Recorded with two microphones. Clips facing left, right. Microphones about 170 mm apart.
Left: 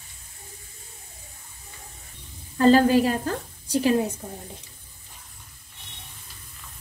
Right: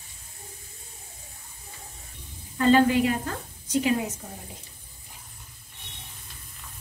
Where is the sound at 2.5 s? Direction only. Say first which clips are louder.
Left 3 dB; 35° left (ahead or behind).